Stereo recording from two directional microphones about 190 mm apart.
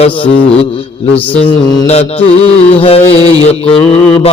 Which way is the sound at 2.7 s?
30° left (ahead or behind).